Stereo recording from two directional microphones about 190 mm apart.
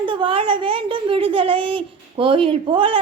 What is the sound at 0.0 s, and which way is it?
A woman's voice, 25° right (ahead or behind).